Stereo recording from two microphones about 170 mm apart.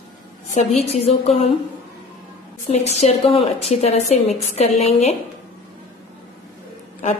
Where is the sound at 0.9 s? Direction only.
40° left (ahead or behind).